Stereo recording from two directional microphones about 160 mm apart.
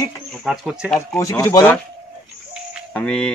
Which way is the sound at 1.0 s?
15° left (ahead or behind).